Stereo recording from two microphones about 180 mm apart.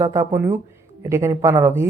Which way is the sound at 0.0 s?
15° right (ahead or behind).